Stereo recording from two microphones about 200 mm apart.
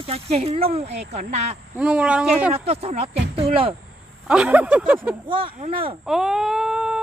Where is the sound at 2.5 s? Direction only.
30° right (ahead or behind).